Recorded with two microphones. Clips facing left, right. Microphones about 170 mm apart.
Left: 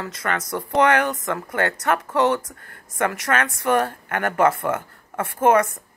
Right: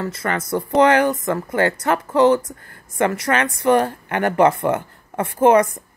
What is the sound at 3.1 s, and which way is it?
Speech, 10° right (ahead or behind).